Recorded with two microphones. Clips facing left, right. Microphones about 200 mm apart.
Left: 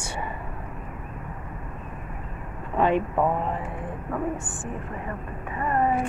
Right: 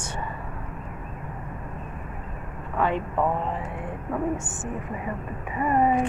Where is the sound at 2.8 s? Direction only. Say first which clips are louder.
Left 3 dB; 15° left (ahead or behind).